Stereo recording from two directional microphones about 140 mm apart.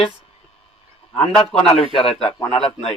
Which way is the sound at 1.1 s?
45° left (ahead or behind).